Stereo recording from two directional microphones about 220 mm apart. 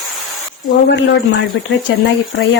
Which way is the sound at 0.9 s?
50° left (ahead or behind).